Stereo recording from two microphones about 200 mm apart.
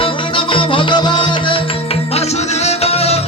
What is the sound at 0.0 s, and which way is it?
Music, 25° left (ahead or behind).